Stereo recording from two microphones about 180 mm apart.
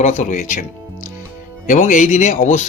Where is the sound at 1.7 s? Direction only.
45° left (ahead or behind).